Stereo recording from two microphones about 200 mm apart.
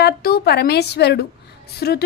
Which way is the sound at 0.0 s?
50° left (ahead or behind).